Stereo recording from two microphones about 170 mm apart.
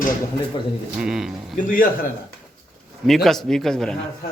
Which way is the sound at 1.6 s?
55° left (ahead or behind).